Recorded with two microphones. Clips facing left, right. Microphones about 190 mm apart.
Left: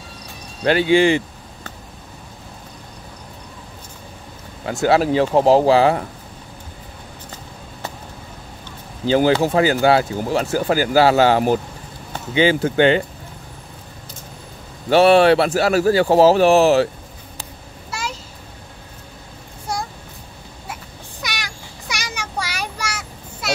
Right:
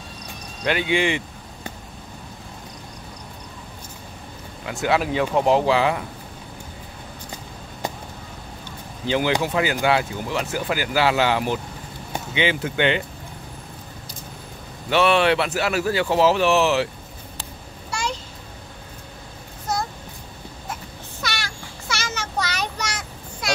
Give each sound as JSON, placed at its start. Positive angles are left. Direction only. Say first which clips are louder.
{"t": 0.7, "sound": "speech", "louder": "left 7 dB", "side_deg": 35}
{"t": 4.8, "sound": "speech", "louder": "left 5 dB", "side_deg": 35}
{"t": 9.0, "sound": "speech", "louder": "left 6 dB", "side_deg": 40}
{"t": 14.9, "sound": "speech", "louder": "left 6 dB", "side_deg": 40}
{"t": 17.9, "sound": "a sound", "louder": "right 1 dB", "side_deg": 5}
{"t": 21.2, "sound": "child singing", "louder": "right 1 dB", "side_deg": 15}